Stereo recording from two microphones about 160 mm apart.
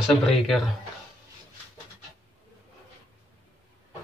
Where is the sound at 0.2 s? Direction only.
Centre (ahead or behind).